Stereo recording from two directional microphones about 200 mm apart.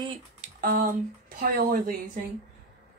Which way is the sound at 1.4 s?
45° right (ahead or behind).